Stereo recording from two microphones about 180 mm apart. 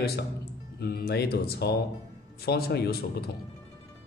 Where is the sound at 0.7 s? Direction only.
60° left (ahead or behind).